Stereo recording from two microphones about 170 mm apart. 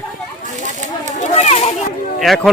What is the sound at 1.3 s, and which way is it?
Children playing, 40° left (ahead or behind).